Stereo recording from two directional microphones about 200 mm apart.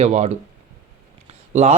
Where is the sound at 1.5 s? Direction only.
35° right (ahead or behind).